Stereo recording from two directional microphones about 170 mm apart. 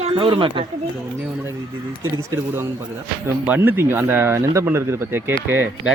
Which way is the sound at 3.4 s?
10° right (ahead or behind).